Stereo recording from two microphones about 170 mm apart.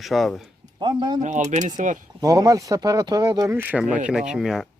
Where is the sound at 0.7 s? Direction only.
25° right (ahead or behind).